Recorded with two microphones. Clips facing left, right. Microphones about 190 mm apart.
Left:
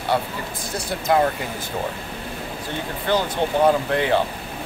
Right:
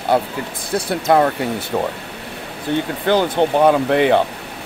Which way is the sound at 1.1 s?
65° right (ahead or behind).